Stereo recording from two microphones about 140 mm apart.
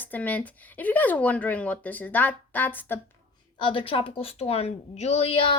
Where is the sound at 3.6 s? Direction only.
40° left (ahead or behind).